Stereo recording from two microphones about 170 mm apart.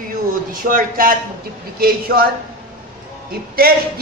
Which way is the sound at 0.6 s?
55° right (ahead or behind).